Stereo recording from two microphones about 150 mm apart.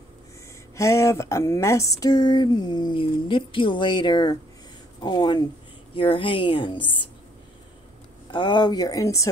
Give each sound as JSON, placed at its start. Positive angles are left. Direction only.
{"t": 0.7, "sound": "speech", "side_deg": 20}
{"t": 8.3, "sound": "speech", "side_deg": 30}